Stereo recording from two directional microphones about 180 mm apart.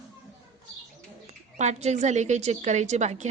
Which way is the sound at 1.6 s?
40° right (ahead or behind).